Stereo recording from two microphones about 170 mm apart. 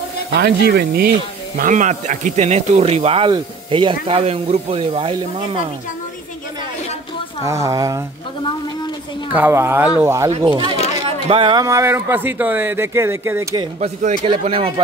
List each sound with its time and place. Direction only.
0.3 s speech: 75° right (ahead or behind)
1.6 s speech: 45° right (ahead or behind); by 5.7 s 30° right (ahead or behind)
7.4 s speech: 20° right (ahead or behind)
9.3 s speech: 10° right (ahead or behind)
10.3 s speech: 30° right (ahead or behind)
11.6 s speech: 15° right (ahead or behind)
13.7 s speech: 40° right (ahead or behind)